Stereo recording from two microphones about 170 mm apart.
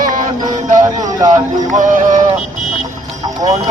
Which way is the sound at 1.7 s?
45° right (ahead or behind).